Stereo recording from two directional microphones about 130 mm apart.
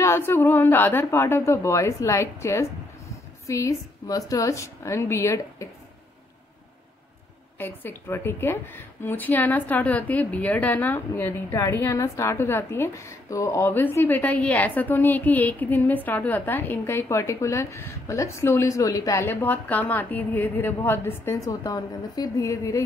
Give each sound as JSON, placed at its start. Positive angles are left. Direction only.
{"t": 0.0, "sound": "a woman's voice", "side_deg": 20}
{"t": 7.5, "sound": "a woman's voice", "side_deg": 15}